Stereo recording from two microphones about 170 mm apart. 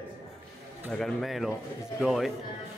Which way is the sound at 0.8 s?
5° left (ahead or behind).